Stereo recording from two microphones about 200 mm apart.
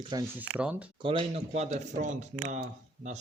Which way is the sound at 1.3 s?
35° right (ahead or behind).